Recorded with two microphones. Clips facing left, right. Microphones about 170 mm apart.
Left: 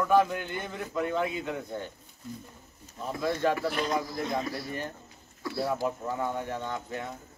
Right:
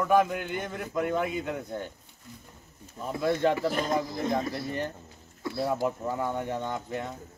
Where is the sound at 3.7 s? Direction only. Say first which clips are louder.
Right 1 dB; 45° right (ahead or behind).